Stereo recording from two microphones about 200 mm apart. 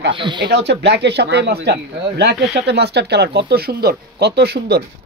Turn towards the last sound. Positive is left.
turn(degrees=-55)  # may be behind; listen again after turning